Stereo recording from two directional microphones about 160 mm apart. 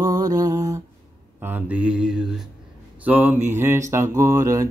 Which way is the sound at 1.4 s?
10° right (ahead or behind).